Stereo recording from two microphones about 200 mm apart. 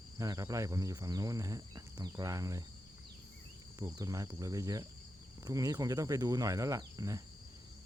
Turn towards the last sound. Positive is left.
turn(degrees=-15)  # may be behind; listen again after turning